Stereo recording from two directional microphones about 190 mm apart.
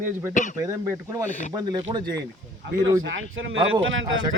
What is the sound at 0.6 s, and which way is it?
Speech, 20° right (ahead or behind).